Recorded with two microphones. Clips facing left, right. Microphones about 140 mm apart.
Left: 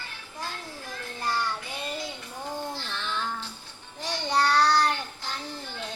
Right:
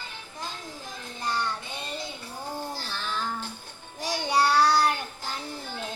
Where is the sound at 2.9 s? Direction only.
5° right (ahead or behind).